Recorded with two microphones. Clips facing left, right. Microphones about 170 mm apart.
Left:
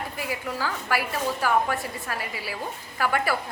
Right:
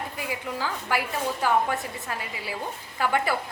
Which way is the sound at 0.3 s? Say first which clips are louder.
Left 1 dB; 20° right (ahead or behind).